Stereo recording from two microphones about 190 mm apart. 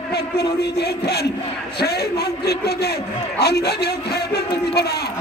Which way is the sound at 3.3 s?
55° left (ahead or behind).